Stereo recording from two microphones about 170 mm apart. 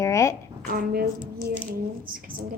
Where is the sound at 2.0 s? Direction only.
55° right (ahead or behind).